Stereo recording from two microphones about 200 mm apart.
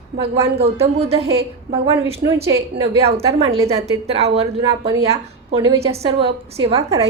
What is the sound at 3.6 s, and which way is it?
A woman's voice, 30° right (ahead or behind).